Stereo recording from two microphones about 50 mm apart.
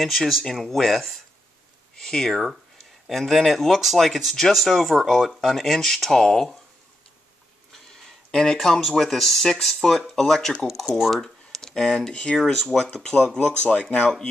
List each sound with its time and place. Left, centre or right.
0.0 s speech: centre
8.3 s speech: centre
12.4 s speech: centre
13.6 s speech: centre